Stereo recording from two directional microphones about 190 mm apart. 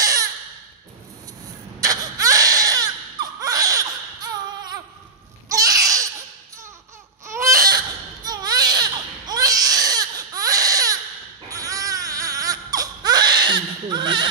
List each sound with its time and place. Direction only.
0.0 s crow: 20° right (ahead or behind)
1.8 s baby cry: 20° right (ahead or behind)
5.5 s a sound: 20° right (ahead or behind)
7.2 s baby cry: 15° right (ahead or behind)